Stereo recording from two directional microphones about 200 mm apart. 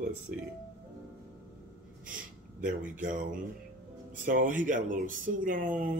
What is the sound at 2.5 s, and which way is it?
Speech, 40° right (ahead or behind).